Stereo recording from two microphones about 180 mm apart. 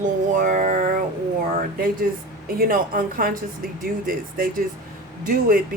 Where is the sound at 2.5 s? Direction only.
50° right (ahead or behind).